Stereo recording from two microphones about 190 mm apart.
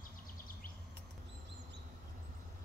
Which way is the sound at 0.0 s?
45° left (ahead or behind).